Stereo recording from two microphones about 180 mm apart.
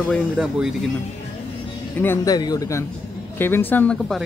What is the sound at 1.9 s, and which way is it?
A man's voice, 10° left (ahead or behind).